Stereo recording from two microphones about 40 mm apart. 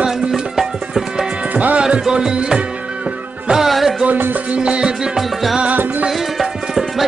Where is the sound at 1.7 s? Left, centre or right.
Right.